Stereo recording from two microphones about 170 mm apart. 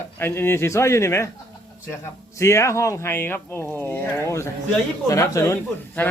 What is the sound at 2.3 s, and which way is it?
Speech, 15° left (ahead or behind).